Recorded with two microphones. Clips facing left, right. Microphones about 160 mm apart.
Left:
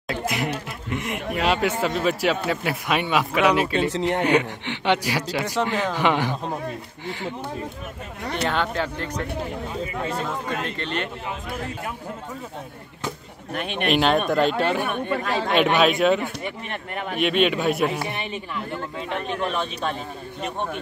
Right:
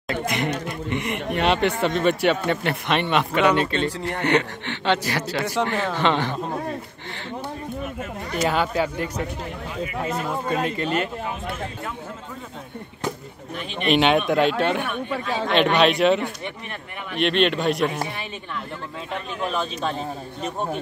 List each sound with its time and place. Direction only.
0.1 s a man's voice: 5° left (ahead or behind)
8.5 s speech: 10° right (ahead or behind)
13.6 s speech: 60° left (ahead or behind)
13.8 s speech: centre (ahead or behind)
19.4 s speech: centre (ahead or behind)